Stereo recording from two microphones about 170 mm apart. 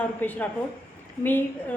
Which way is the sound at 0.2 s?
10° left (ahead or behind).